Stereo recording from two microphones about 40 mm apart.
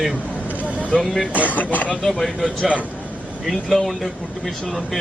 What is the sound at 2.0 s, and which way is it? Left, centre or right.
Speech, centre.